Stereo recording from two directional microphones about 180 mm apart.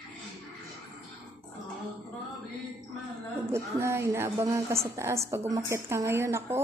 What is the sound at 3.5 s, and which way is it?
A woman's voice, 15° right (ahead or behind).